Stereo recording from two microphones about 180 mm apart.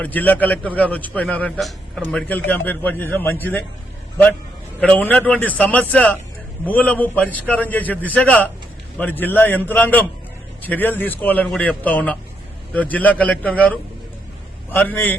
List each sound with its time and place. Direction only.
0.0 s a man's voice: 10° left (ahead or behind)
4.8 s a man's voice: 10° left (ahead or behind)